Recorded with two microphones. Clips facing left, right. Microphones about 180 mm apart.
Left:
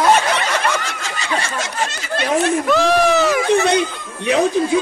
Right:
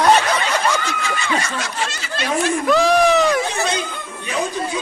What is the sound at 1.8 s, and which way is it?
Speech, 55° left (ahead or behind).